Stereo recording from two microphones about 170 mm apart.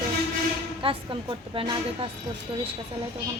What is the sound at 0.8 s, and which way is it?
A woman's voice, 30° right (ahead or behind).